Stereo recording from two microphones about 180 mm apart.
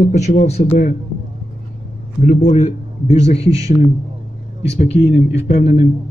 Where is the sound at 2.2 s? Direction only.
40° left (ahead or behind).